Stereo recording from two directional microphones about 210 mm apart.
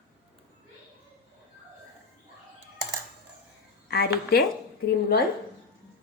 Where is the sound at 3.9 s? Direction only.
45° left (ahead or behind).